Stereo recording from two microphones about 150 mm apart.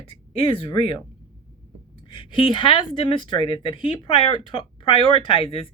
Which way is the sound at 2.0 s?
35° left (ahead or behind).